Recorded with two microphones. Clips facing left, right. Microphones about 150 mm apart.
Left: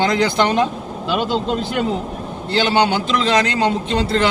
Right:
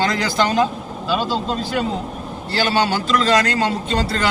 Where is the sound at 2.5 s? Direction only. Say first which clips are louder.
Left 3 dB; 20° left (ahead or behind).